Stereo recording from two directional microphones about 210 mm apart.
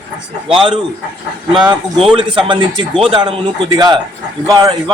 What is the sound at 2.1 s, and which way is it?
A man's voice, 25° right (ahead or behind).